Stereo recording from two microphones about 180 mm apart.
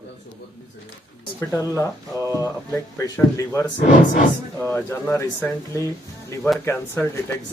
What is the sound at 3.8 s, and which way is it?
Speech, 50° left (ahead or behind).